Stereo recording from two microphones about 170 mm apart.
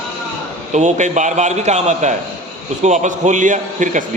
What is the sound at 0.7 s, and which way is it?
Speech, 45° right (ahead or behind).